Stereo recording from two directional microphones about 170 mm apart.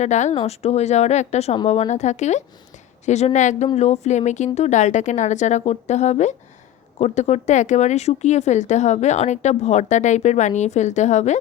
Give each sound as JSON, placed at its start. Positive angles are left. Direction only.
{"t": 0.0, "sound": "a woman's voice", "side_deg": 45}